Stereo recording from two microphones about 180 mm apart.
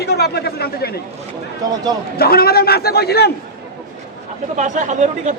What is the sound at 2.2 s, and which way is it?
Speech, 60° left (ahead or behind).